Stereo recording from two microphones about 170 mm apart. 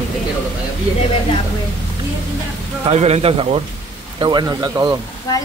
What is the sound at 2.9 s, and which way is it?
Speech, 40° right (ahead or behind).